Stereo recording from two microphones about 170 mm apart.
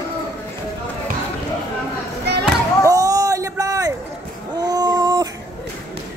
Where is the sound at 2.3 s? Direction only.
75° right (ahead or behind).